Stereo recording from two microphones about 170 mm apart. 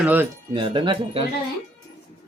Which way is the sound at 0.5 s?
30° right (ahead or behind).